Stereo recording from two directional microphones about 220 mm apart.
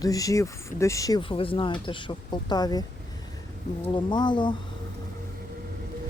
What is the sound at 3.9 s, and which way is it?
Speech, 20° left (ahead or behind).